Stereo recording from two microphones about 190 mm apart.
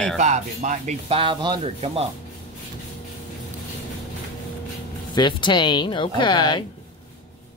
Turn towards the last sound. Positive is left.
turn(degrees=25)  # may be behind; listen again after turning